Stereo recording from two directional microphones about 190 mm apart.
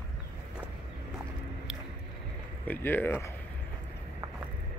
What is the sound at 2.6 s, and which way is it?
Speech, 10° left (ahead or behind).